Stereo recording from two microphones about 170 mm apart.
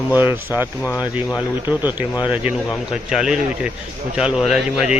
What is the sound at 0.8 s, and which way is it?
Speech, 20° left (ahead or behind).